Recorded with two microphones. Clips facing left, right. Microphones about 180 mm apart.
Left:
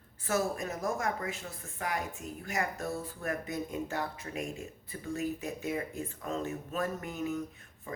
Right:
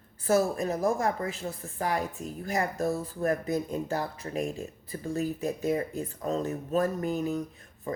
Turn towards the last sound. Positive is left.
turn(degrees=-35)  # may be behind; listen again after turning